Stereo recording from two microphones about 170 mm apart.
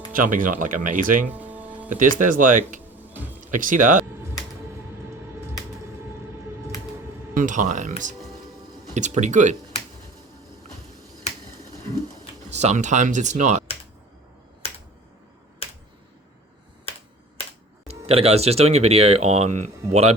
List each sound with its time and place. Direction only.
0.1 s speech: 50° right (ahead or behind)
1.3 s music: 10° right (ahead or behind)
1.9 s speech: 50° right (ahead or behind)
3.1 s music: 10° right (ahead or behind)
3.4 s speech: 50° right (ahead or behind)
7.3 s speech: 50° right (ahead or behind)
12.5 s speech: 40° right (ahead or behind)
17.8 s speech: 35° right (ahead or behind)